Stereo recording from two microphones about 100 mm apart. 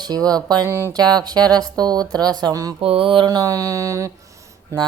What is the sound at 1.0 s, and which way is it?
Mantra, 40° right (ahead or behind).